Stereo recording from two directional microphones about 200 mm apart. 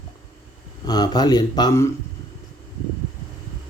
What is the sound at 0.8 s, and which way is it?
Speech, 20° left (ahead or behind).